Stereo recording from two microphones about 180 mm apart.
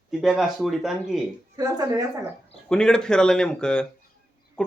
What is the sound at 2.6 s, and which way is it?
Speech, 5° left (ahead or behind).